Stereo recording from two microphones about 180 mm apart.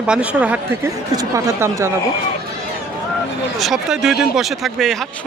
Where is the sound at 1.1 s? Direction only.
20° right (ahead or behind).